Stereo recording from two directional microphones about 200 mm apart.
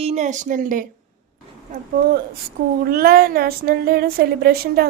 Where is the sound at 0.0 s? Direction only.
35° right (ahead or behind).